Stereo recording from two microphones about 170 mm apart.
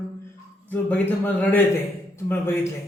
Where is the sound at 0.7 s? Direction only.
10° left (ahead or behind).